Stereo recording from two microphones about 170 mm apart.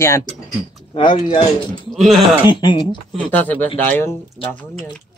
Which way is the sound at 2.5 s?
25° left (ahead or behind).